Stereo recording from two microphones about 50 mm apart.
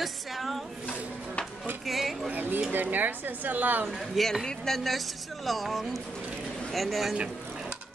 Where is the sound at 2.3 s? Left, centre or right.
Right.